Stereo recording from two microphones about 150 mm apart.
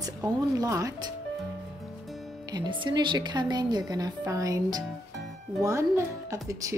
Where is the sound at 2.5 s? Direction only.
30° right (ahead or behind).